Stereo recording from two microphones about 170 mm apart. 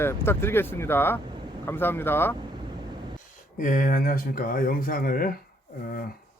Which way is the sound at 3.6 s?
50° left (ahead or behind).